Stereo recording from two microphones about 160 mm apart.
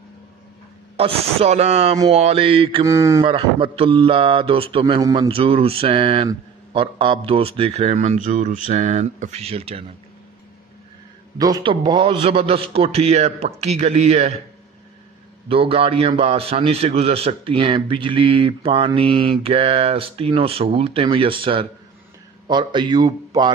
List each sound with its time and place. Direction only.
0.9 s a man's voice: 40° right (ahead or behind)
2.8 s speech: 20° right (ahead or behind)
3.3 s a man's voice: 35° right (ahead or behind)
5.0 s speech: 20° right (ahead or behind)
5.3 s a man's voice: 35° right (ahead or behind)
11.3 s a man's voice: 25° right (ahead or behind); by 14.3 s 40° right (ahead or behind)
15.4 s a man's voice: 35° right (ahead or behind)